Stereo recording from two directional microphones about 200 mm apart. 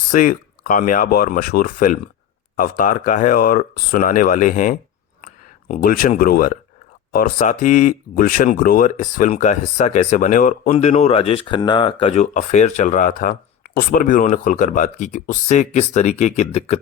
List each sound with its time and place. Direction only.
0.1 s speech: 45° left (ahead or behind)